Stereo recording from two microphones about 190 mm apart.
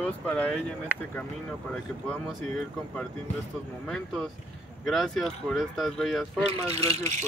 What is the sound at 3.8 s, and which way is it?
Speech, centre (ahead or behind).